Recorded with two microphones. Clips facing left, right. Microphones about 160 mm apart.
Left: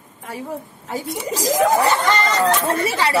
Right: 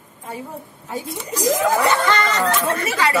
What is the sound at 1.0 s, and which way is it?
Speech, 90° left.